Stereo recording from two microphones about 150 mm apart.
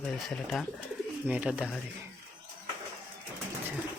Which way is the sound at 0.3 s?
5° left (ahead or behind).